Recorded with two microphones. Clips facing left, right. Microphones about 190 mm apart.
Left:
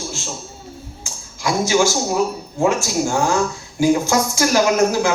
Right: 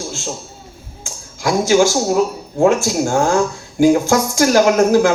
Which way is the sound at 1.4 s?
50° right (ahead or behind).